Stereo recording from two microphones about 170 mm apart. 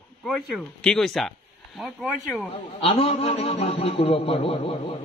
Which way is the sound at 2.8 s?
35° left (ahead or behind).